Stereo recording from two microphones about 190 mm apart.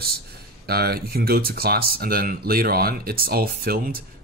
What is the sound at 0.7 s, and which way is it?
Speech, 55° right (ahead or behind).